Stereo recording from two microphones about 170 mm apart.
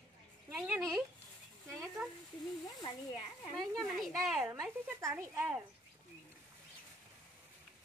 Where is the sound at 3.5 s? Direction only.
Centre (ahead or behind).